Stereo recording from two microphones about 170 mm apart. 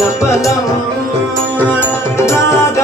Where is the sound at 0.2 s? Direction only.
15° left (ahead or behind).